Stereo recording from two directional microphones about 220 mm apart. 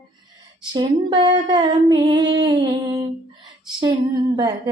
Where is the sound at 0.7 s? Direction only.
20° right (ahead or behind).